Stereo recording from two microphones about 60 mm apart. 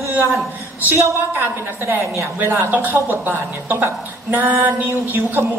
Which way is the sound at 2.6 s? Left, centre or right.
Right.